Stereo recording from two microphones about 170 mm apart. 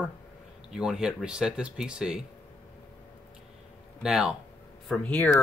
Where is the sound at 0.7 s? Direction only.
5° right (ahead or behind).